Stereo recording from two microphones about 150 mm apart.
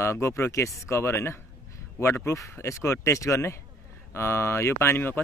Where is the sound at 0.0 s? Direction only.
20° left (ahead or behind).